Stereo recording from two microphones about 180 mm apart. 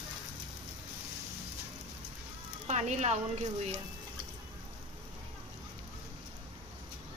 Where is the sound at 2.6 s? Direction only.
40° right (ahead or behind).